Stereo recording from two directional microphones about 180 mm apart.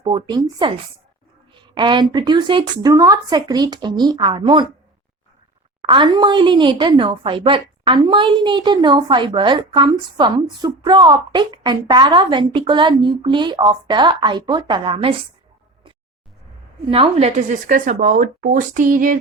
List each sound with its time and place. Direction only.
0.0 s a woman's voice: 25° right (ahead or behind)
5.9 s a woman's voice: 25° right (ahead or behind)
16.8 s speech: 30° right (ahead or behind); by 19.1 s 45° right (ahead or behind)